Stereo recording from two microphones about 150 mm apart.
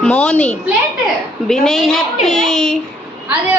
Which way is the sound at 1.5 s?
Centre (ahead or behind).